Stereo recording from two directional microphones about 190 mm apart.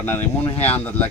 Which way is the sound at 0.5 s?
35° left (ahead or behind).